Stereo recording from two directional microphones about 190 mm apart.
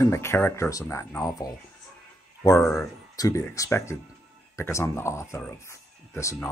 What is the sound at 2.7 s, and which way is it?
Speech, 15° left (ahead or behind).